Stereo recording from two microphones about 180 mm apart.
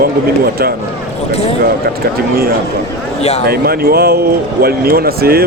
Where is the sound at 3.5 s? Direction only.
60° right (ahead or behind).